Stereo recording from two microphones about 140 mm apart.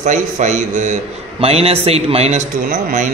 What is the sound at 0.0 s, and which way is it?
A man's voice, 65° right (ahead or behind).